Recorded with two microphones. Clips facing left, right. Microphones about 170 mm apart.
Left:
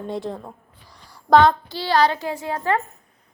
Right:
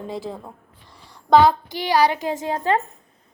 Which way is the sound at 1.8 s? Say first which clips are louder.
Even; 15° right (ahead or behind).